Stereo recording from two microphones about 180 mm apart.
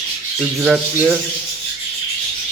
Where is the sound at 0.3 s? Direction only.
Centre (ahead or behind).